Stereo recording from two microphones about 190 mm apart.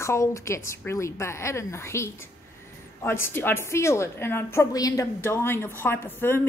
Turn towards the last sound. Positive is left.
turn(degrees=10)  # may be behind; listen again after turning